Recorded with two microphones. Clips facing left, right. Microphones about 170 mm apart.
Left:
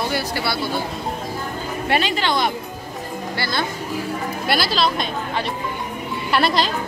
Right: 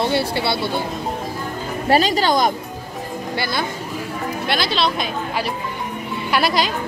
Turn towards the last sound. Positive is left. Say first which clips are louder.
# even
turn(degrees=0)  # may be behind; listen again after turning